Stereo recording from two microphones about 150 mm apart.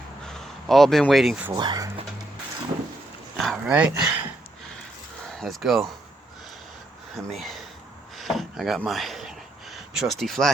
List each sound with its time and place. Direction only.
0.3 s speech: 5° left (ahead or behind)
1.5 s speech: 30° right (ahead or behind)
3.3 s speech: centre (ahead or behind)
5.4 s speech: centre (ahead or behind)
7.3 s speech: centre (ahead or behind)
8.1 s a sound: centre (ahead or behind)